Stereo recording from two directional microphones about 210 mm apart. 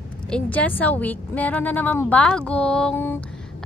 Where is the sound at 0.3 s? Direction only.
5° left (ahead or behind).